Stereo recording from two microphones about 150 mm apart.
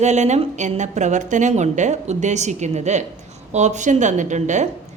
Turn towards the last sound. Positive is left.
turn(degrees=-50)  # may be behind; listen again after turning